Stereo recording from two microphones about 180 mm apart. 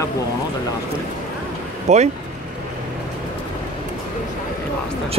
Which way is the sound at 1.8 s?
40° right (ahead or behind).